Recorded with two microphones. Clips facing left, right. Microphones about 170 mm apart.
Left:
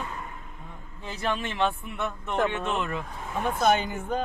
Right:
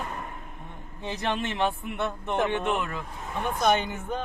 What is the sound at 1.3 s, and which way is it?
Speech, 20° right (ahead or behind).